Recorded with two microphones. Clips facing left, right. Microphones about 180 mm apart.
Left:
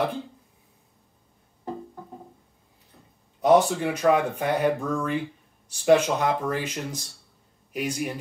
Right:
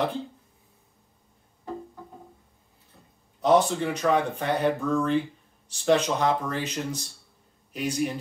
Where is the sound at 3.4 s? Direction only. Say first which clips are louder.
Left 2 dB; 10° left (ahead or behind).